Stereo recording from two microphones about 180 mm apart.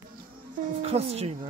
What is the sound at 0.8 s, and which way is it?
Speech, 35° right (ahead or behind).